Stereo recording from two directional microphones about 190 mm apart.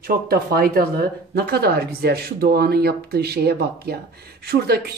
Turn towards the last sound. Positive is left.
turn(degrees=-55)  # may be behind; listen again after turning